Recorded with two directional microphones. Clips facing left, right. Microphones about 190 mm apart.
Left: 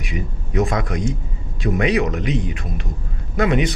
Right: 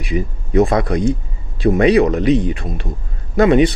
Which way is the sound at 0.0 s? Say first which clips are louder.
Right 7 dB; 30° right (ahead or behind).